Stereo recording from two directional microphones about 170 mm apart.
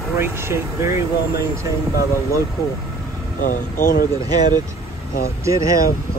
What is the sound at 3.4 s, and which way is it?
Speech, 55° left (ahead or behind).